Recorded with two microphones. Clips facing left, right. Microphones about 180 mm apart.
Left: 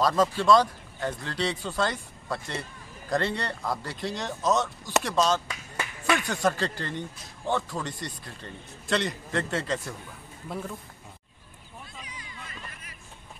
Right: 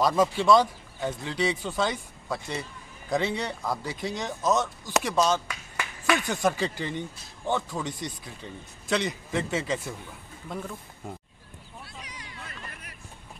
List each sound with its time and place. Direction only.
0.0 s speech: 10° right (ahead or behind)
2.2 s a man's voice: 5° right (ahead or behind)
12.0 s hubbub: 70° right (ahead or behind)